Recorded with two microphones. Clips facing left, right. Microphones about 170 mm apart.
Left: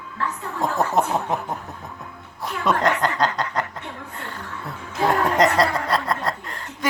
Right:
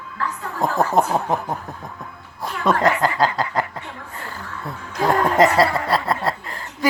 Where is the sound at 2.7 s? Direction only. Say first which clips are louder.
Right 3 dB; 5° right (ahead or behind).